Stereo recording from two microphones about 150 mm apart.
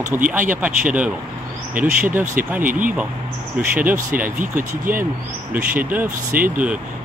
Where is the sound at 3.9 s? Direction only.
65° right (ahead or behind).